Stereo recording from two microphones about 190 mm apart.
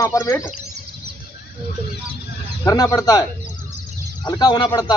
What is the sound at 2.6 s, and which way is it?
Speech, 15° left (ahead or behind).